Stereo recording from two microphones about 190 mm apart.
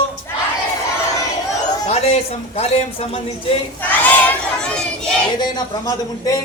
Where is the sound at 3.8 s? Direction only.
10° left (ahead or behind).